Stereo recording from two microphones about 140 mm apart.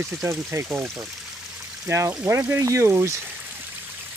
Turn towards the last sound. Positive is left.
turn(degrees=-20)  # may be behind; listen again after turning